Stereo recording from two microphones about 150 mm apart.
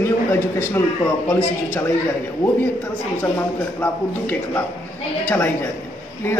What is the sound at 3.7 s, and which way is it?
A woman's voice, 10° left (ahead or behind).